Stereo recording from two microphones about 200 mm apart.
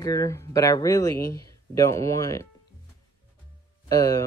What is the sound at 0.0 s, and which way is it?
Speech, 15° left (ahead or behind).